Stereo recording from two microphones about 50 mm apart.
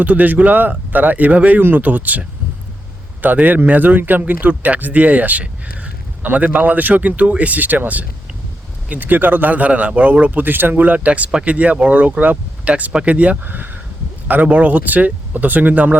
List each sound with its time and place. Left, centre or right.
0.0 s speech: right